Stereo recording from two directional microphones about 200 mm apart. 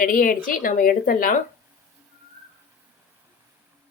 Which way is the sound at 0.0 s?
45° left (ahead or behind).